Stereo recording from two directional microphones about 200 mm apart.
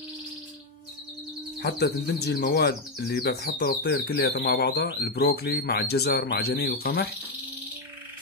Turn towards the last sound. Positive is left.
turn(degrees=50)  # may be behind; listen again after turning